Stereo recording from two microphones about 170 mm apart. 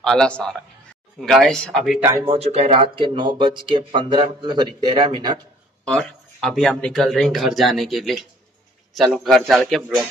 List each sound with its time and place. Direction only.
0.0 s speech: 5° left (ahead or behind)
2.2 s speech: 35° right (ahead or behind)
5.9 s speech: 5° left (ahead or behind)